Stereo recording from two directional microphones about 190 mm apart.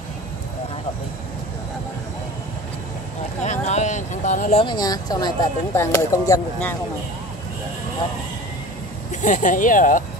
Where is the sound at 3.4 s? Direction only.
40° left (ahead or behind); by 6.7 s 15° left (ahead or behind).